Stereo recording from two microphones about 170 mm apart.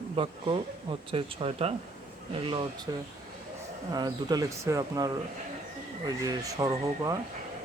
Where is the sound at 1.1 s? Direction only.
35° right (ahead or behind).